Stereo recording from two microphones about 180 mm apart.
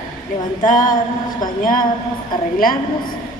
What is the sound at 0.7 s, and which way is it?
Speech, 50° left (ahead or behind).